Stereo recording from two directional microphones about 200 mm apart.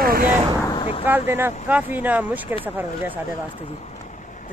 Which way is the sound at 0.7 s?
25° left (ahead or behind).